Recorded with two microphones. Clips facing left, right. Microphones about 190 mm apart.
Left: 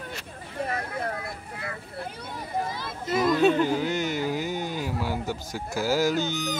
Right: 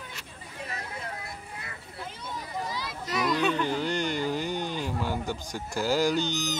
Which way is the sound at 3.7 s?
5° left (ahead or behind).